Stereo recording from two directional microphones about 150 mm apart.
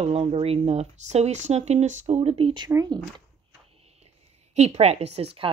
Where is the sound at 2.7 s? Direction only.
25° right (ahead or behind).